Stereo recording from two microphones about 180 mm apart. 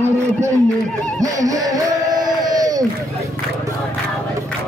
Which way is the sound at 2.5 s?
20° right (ahead or behind).